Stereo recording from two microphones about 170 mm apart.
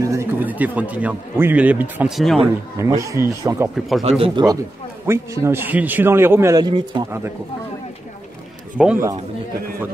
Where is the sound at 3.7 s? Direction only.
Centre (ahead or behind).